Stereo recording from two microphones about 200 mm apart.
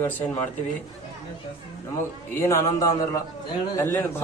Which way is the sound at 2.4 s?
15° left (ahead or behind).